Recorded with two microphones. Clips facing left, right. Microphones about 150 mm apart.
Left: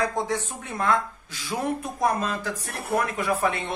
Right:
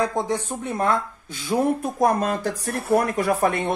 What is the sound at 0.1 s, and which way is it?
Speech, 30° right (ahead or behind).